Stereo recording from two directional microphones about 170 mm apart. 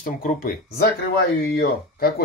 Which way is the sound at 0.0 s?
55° left (ahead or behind).